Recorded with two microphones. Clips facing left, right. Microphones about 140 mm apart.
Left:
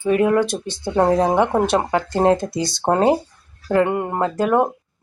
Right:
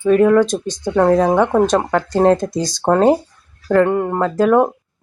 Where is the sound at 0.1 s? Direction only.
10° left (ahead or behind).